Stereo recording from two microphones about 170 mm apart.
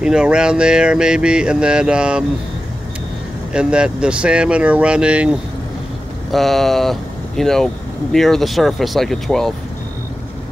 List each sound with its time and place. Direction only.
0.0 s speech: 5° right (ahead or behind)
3.5 s speech: 5° right (ahead or behind)
6.3 s speech: centre (ahead or behind)